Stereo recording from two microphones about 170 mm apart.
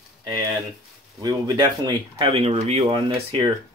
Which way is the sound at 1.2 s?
25° right (ahead or behind).